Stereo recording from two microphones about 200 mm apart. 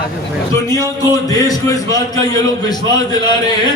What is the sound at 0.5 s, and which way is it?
A man's voice, 15° left (ahead or behind).